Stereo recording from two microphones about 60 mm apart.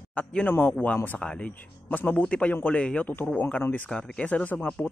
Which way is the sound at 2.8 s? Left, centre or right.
Centre.